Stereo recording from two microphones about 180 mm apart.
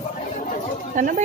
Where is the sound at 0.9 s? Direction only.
45° right (ahead or behind).